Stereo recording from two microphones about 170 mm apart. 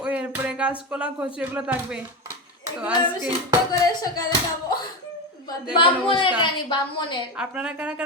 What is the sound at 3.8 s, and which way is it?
Speech, 20° left (ahead or behind).